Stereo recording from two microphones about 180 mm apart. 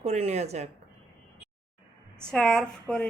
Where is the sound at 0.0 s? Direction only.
35° right (ahead or behind).